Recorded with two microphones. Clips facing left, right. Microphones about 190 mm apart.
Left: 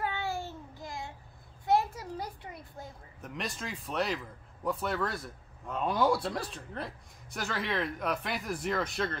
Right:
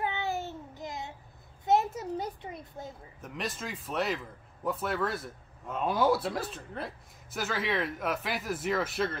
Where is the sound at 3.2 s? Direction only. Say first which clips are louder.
Right 1 dB; centre (ahead or behind).